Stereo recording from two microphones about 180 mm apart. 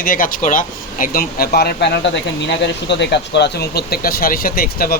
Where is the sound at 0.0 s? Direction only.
50° left (ahead or behind).